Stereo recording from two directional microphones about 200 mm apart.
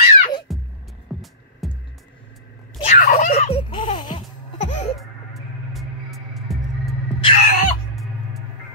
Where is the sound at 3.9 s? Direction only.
20° left (ahead or behind).